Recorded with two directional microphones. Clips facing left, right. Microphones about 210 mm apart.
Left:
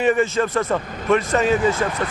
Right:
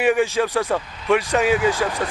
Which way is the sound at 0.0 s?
Centre (ahead or behind).